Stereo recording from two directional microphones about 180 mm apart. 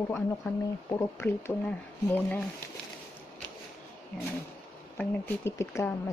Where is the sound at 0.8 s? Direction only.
15° left (ahead or behind).